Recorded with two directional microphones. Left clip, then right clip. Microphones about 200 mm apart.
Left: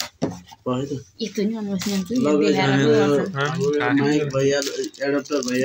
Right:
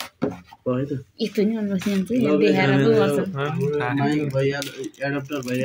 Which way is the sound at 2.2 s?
45° right (ahead or behind).